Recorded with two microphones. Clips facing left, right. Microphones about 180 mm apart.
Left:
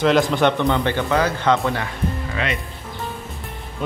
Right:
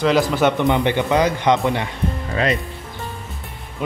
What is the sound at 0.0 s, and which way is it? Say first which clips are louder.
Speech: even; centre (ahead or behind).